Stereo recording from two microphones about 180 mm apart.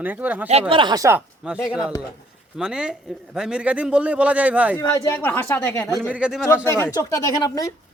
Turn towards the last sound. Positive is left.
turn(degrees=20)  # may be behind; listen again after turning